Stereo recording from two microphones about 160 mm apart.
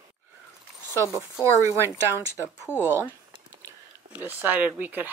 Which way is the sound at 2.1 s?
15° left (ahead or behind).